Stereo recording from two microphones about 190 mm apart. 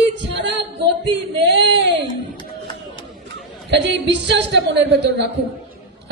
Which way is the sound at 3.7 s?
65° right (ahead or behind).